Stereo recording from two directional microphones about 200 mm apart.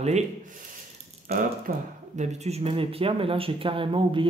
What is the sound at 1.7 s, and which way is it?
Speech, 45° right (ahead or behind).